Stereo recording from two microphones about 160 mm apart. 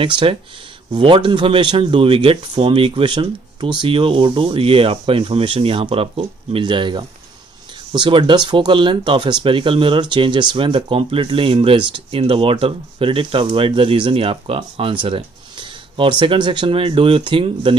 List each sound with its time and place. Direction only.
0.0 s speech: 30° right (ahead or behind)